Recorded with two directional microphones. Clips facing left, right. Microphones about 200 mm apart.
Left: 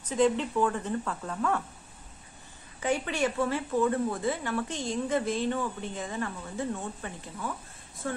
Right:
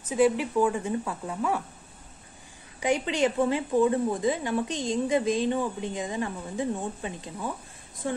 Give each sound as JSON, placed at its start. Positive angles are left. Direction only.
{"t": 0.0, "sound": "speech", "side_deg": -10}
{"t": 2.8, "sound": "a woman's voice", "side_deg": -15}